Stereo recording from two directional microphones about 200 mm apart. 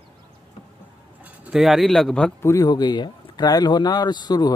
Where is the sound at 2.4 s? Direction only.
20° left (ahead or behind).